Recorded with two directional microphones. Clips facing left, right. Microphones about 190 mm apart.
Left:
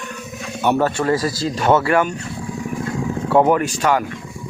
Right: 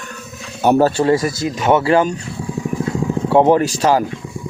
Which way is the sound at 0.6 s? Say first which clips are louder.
Right 5 dB; 35° right (ahead or behind).